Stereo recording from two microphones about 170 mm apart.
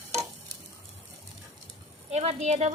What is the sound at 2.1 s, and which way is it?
Speech, 40° right (ahead or behind).